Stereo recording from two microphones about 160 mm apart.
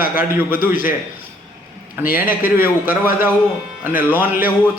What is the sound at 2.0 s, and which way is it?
Speech, 10° right (ahead or behind).